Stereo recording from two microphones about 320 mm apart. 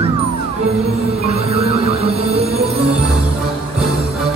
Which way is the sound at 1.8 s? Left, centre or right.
Centre.